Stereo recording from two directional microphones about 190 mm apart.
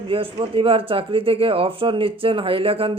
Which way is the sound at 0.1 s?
30° right (ahead or behind).